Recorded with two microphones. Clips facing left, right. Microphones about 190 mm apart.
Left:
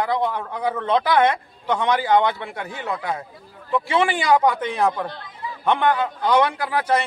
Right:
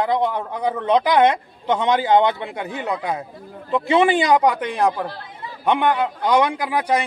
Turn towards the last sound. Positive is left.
turn(degrees=-15)  # may be behind; listen again after turning